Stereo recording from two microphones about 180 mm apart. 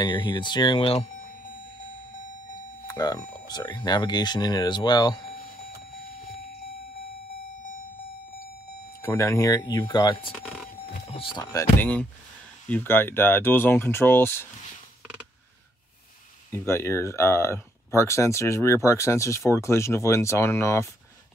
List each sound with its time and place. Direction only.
0.0 s speech: 25° left (ahead or behind)
2.9 s speech: 20° left (ahead or behind)
9.0 s speech: 15° left (ahead or behind)
11.8 s speech: 10° left (ahead or behind)
16.5 s speech: 15° left (ahead or behind)